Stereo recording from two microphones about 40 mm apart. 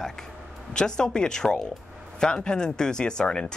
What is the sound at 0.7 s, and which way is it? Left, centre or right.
Speech, centre.